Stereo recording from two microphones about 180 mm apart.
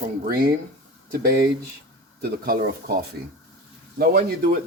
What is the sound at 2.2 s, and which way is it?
Speech, 60° right (ahead or behind).